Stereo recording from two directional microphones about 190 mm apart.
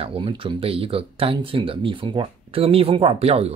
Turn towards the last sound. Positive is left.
turn(degrees=-30)  # may be behind; listen again after turning